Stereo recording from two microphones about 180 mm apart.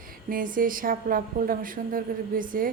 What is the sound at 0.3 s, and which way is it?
Speech, 50° right (ahead or behind).